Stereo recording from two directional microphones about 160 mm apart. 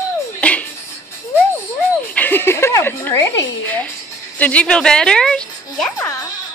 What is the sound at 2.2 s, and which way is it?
A woman's voice, 10° left (ahead or behind).